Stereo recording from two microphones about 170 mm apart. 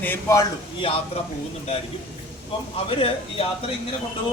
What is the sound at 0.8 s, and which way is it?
Speech, 30° left (ahead or behind).